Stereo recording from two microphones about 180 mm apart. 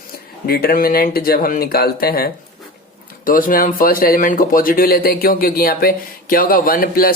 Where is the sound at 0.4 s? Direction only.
55° left (ahead or behind).